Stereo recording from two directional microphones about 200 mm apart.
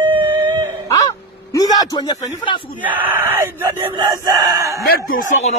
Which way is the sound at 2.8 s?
10° right (ahead or behind).